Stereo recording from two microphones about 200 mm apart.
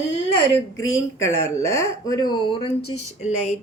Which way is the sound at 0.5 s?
15° left (ahead or behind).